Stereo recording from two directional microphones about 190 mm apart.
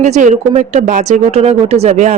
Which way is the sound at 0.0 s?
40° right (ahead or behind).